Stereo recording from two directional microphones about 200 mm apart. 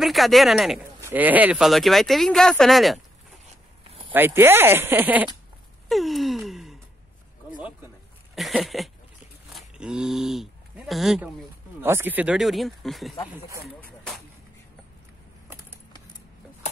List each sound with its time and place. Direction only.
0.0 s speech: centre (ahead or behind)
4.1 s speech: 10° right (ahead or behind)
5.9 s gasp: centre (ahead or behind)
8.4 s speech: centre (ahead or behind)